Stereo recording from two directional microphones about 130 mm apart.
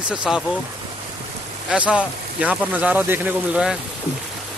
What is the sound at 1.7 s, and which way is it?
Speech, 10° right (ahead or behind).